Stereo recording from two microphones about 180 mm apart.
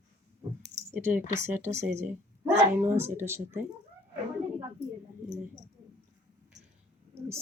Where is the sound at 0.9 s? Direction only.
15° right (ahead or behind).